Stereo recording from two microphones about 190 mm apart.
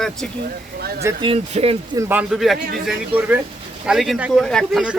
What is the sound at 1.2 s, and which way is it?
Speech, 30° right (ahead or behind).